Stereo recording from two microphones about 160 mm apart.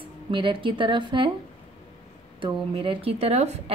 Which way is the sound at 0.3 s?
30° right (ahead or behind).